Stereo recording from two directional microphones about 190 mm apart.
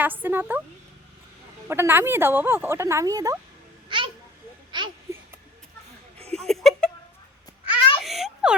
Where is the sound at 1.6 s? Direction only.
10° right (ahead or behind).